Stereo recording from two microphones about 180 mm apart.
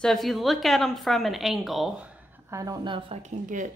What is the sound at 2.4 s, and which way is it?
Speech, 20° right (ahead or behind).